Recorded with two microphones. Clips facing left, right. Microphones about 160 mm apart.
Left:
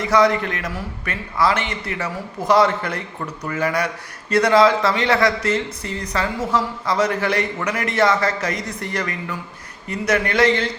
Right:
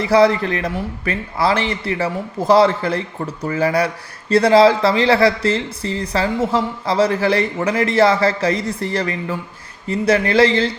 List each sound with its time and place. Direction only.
0.0 s a man's voice: 30° right (ahead or behind)